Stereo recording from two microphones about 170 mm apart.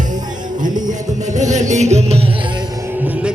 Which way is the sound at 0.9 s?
45° right (ahead or behind).